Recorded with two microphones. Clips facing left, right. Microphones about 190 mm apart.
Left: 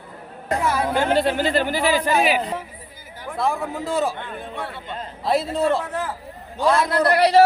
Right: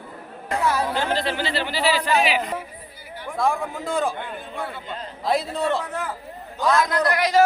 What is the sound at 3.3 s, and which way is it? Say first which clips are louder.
A man's voice: even; centre (ahead or behind).